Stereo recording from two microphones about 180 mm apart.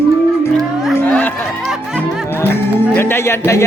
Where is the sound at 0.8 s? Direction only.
5° left (ahead or behind).